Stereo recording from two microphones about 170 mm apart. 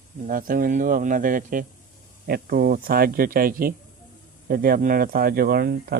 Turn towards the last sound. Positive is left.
turn(degrees=-70)  # may be behind; listen again after turning